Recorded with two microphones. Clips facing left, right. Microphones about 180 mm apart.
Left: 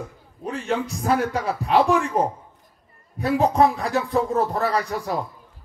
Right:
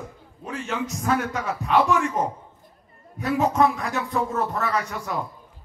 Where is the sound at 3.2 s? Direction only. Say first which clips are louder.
Left 2 dB; 35° left (ahead or behind).